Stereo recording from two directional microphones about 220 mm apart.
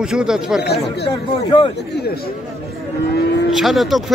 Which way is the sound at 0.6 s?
50° left (ahead or behind).